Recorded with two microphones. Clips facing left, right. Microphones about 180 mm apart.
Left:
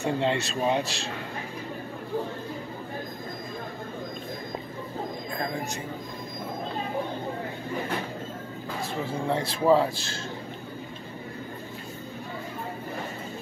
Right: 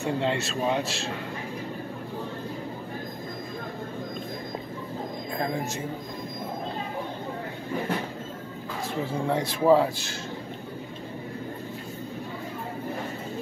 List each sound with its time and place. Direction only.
0.0 s speech: centre (ahead or behind)
9.3 s speech: 15° right (ahead or behind)